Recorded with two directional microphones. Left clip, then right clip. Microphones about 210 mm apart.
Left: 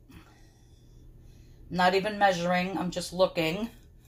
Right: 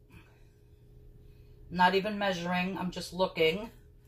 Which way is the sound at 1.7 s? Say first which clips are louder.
Left 1 dB; 50° left (ahead or behind).